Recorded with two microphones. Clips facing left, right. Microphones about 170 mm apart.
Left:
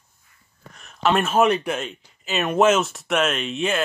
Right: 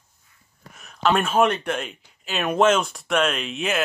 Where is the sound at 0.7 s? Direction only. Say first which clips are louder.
Left 1 dB; centre (ahead or behind).